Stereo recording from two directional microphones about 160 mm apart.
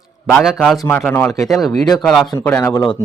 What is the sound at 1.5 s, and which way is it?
Speech, centre (ahead or behind).